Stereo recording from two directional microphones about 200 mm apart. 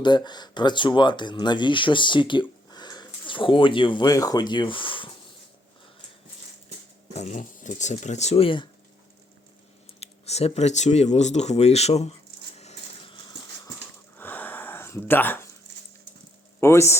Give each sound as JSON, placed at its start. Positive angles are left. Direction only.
{"t": 0.0, "sound": "speech", "side_deg": 20}
{"t": 7.1, "sound": "speech", "side_deg": 35}
{"t": 10.0, "sound": "speech", "side_deg": 30}
{"t": 12.5, "sound": "a sound", "side_deg": 30}
{"t": 14.2, "sound": "a sound", "side_deg": 10}
{"t": 16.6, "sound": "speech", "side_deg": 15}